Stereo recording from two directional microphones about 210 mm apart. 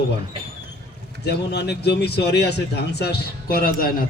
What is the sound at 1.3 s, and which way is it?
A man's voice, 50° left (ahead or behind).